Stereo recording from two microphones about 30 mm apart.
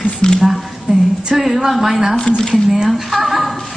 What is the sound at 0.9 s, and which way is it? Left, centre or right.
Speech, right.